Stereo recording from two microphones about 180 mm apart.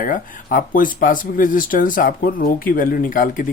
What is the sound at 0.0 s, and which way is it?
Speech, 50° left (ahead or behind).